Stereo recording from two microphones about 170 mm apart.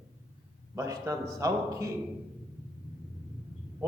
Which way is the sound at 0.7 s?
15° right (ahead or behind).